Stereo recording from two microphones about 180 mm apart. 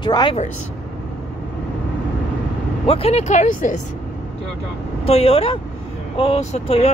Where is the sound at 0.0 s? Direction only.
25° left (ahead or behind).